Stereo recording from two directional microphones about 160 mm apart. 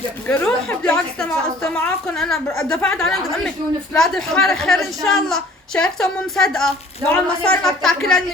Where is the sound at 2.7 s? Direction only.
5° left (ahead or behind).